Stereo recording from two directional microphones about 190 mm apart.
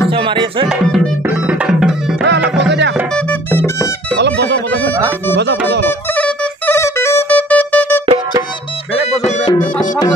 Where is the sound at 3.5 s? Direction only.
15° left (ahead or behind).